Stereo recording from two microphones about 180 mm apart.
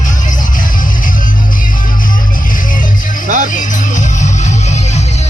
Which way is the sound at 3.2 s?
50° right (ahead or behind).